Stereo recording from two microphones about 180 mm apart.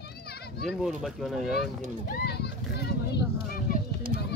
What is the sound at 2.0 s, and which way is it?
Children playing, 60° left (ahead or behind).